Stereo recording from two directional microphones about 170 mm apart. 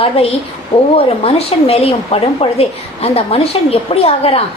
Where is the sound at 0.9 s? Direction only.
35° left (ahead or behind).